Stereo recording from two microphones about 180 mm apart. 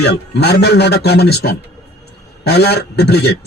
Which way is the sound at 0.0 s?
65° left (ahead or behind).